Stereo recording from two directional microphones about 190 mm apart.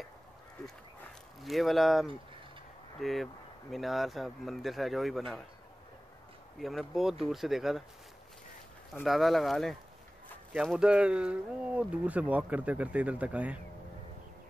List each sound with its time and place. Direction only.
1.4 s speech: centre (ahead or behind)
6.6 s speech: centre (ahead or behind)
9.0 s speech: centre (ahead or behind)